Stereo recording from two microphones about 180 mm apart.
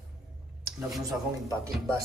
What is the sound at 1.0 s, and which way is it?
Speech, 20° right (ahead or behind).